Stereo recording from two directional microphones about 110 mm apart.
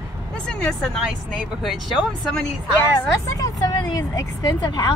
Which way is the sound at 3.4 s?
35° left (ahead or behind).